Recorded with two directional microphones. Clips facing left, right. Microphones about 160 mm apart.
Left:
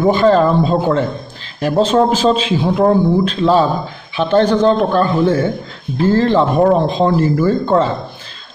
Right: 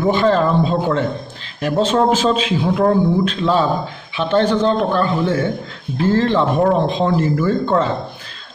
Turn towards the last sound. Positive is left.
turn(degrees=35)  # may be behind; listen again after turning